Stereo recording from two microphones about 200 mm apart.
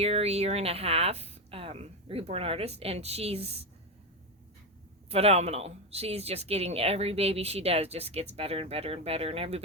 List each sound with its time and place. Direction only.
0.0 s speech: 30° right (ahead or behind)
5.1 s speech: 30° right (ahead or behind)